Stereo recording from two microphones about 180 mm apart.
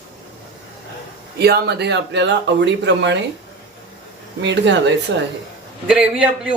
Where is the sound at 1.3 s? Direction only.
65° right (ahead or behind).